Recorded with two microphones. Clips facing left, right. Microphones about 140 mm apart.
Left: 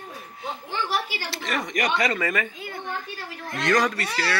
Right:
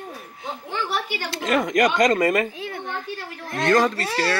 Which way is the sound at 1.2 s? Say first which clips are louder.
Right 7 dB; 50° right (ahead or behind).